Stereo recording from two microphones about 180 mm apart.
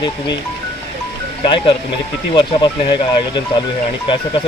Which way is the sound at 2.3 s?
25° left (ahead or behind).